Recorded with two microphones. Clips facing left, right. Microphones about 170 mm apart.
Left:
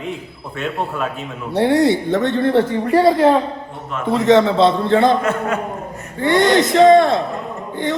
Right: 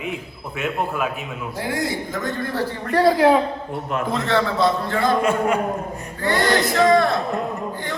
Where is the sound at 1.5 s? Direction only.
70° left (ahead or behind).